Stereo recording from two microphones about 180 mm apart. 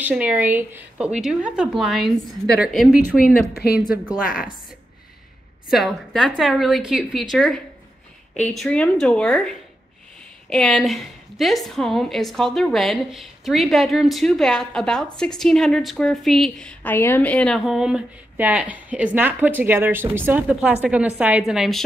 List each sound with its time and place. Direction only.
0.0 s a woman's voice: 10° right (ahead or behind)
3.2 s speech: 55° left (ahead or behind)
5.7 s a woman's voice: centre (ahead or behind)